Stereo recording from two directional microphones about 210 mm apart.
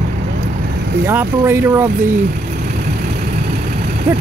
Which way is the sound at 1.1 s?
10° right (ahead or behind).